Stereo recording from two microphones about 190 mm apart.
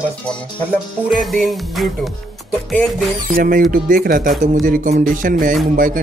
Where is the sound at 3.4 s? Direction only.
45° right (ahead or behind).